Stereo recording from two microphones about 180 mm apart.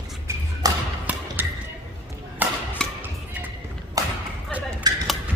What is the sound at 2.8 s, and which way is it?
Music, 5° left (ahead or behind).